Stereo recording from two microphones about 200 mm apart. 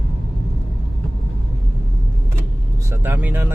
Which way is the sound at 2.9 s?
10° right (ahead or behind).